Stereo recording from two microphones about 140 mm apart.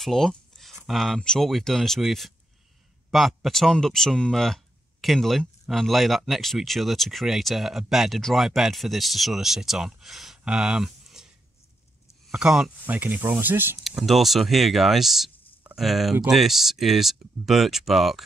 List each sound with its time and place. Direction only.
0.0 s speech: centre (ahead or behind)
12.3 s speech: 5° right (ahead or behind)
13.8 s speech: centre (ahead or behind)